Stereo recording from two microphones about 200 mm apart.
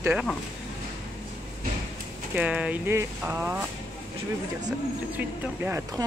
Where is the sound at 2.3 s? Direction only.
5° right (ahead or behind).